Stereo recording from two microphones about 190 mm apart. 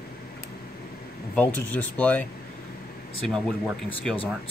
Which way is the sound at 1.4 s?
10° left (ahead or behind).